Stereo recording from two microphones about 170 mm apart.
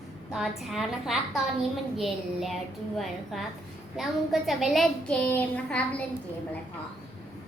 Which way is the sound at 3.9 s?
Centre (ahead or behind).